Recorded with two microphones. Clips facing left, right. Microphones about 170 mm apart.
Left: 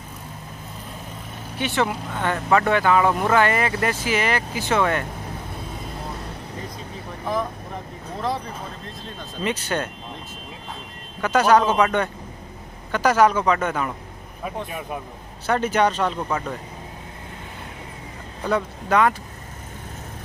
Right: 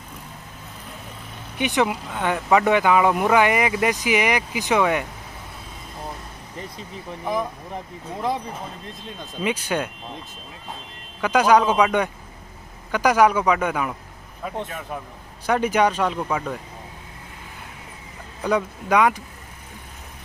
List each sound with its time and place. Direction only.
1.6 s speech: 15° right (ahead or behind)
9.0 s speech: 10° right (ahead or behind)
11.1 s speech: 10° right (ahead or behind)
14.7 s a man's voice: 15° left (ahead or behind)
15.4 s speech: 10° right (ahead or behind)
18.4 s speech: 10° right (ahead or behind)